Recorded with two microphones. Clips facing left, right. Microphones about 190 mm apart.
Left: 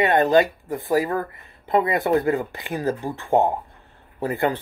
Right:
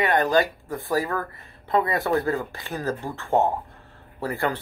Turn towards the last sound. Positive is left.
turn(degrees=20)  # may be behind; listen again after turning